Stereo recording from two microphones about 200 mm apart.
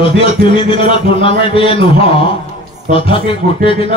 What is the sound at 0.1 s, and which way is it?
A man's voice, 25° left (ahead or behind).